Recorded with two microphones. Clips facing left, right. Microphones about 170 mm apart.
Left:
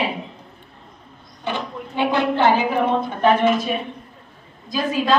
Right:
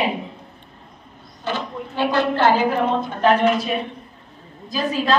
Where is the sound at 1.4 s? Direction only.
15° left (ahead or behind).